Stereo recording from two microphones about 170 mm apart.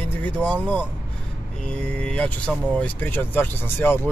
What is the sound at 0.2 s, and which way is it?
Speech, 10° left (ahead or behind).